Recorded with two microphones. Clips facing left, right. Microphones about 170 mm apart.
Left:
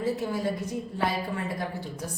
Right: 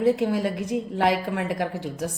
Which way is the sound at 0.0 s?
80° right.